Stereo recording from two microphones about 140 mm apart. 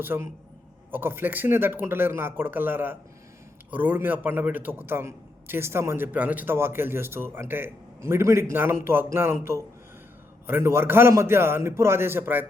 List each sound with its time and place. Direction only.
0.1 s a man's voice: 15° right (ahead or behind)